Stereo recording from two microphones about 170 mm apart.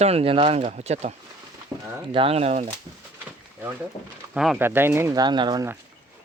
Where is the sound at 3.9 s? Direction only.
30° left (ahead or behind).